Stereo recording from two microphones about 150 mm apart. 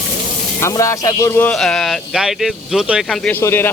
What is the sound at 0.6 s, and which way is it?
Speech, 20° left (ahead or behind).